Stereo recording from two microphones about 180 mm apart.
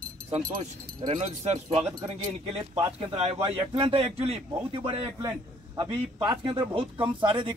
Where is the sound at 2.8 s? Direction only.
25° right (ahead or behind).